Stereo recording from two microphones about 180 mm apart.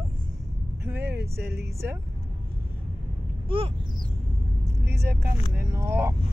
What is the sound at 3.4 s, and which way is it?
Speech, 30° right (ahead or behind).